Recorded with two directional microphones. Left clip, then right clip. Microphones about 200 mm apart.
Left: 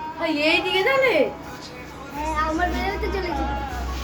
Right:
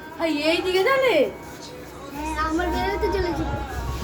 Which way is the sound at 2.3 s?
Centre (ahead or behind).